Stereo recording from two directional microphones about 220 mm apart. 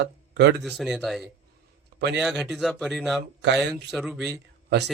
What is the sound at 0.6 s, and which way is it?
Speech, centre (ahead or behind).